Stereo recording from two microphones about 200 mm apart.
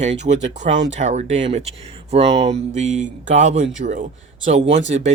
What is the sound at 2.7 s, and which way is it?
Speech, 35° right (ahead or behind).